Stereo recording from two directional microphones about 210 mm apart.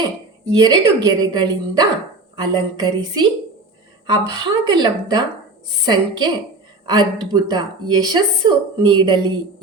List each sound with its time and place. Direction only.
0.4 s speech: 15° right (ahead or behind)